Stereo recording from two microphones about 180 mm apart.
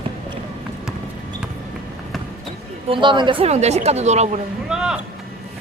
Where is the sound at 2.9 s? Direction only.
25° right (ahead or behind).